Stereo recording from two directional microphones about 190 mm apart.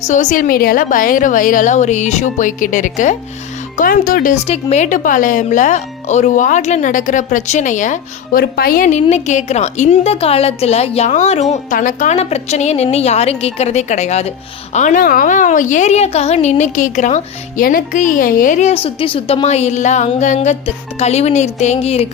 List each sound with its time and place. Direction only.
0.1 s a woman's voice: 40° left (ahead or behind)
4.4 s speech: 35° left (ahead or behind)